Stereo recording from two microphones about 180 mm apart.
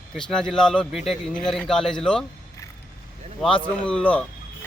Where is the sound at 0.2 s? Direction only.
5° left (ahead or behind).